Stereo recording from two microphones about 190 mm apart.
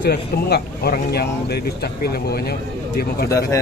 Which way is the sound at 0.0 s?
55° left (ahead or behind).